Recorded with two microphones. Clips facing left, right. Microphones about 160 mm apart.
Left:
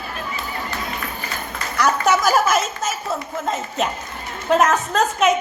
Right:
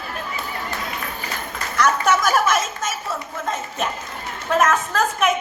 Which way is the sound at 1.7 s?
30° left (ahead or behind).